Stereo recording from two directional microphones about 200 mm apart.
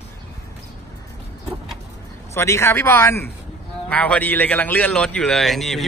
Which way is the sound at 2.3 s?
15° left (ahead or behind).